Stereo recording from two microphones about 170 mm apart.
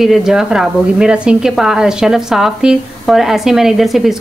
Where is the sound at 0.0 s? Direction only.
Centre (ahead or behind).